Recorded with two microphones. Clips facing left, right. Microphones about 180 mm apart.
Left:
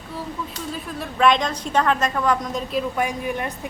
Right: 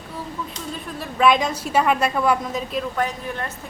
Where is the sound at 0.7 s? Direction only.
Centre (ahead or behind).